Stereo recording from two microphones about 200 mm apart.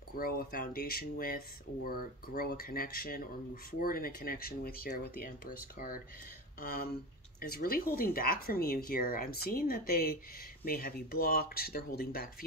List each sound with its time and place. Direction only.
0.1 s speech: 45° left (ahead or behind)